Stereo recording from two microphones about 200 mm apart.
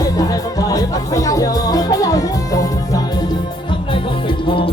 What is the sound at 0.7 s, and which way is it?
Speech, 15° left (ahead or behind).